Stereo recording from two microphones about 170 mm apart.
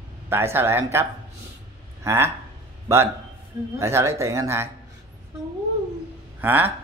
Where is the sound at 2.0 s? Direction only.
15° right (ahead or behind).